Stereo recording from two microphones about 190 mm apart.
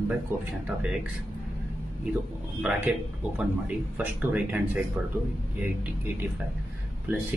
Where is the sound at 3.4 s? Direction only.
5° right (ahead or behind).